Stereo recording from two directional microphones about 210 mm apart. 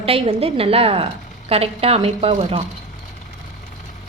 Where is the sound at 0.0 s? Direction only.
25° right (ahead or behind).